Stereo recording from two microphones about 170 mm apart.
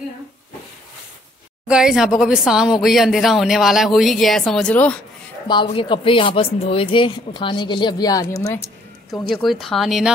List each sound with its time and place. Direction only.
1.7 s speech: 5° right (ahead or behind)
5.5 s speech: 30° left (ahead or behind)
9.1 s speech: centre (ahead or behind)